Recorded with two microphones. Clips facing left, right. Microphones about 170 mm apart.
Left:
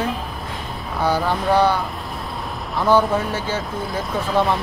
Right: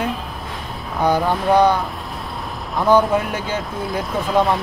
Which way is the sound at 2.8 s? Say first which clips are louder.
Right 2 dB; 15° right (ahead or behind).